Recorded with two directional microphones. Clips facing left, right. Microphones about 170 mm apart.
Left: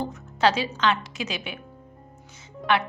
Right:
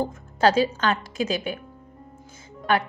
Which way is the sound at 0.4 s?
45° right (ahead or behind).